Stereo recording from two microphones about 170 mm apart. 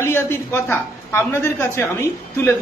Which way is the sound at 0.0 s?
15° left (ahead or behind).